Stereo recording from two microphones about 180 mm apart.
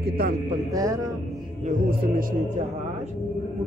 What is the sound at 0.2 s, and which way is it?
Speech, 55° right (ahead or behind).